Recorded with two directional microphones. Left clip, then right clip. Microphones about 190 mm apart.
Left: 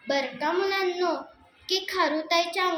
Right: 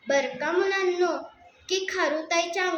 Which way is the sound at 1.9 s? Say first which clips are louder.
Left 2 dB; 15° right (ahead or behind).